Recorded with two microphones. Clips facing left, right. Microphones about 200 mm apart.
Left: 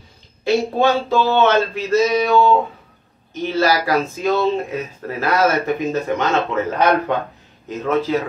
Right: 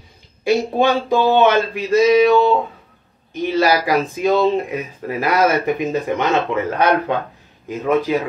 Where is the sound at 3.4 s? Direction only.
15° right (ahead or behind).